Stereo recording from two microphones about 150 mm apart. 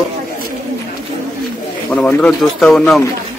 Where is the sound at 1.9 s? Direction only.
10° left (ahead or behind).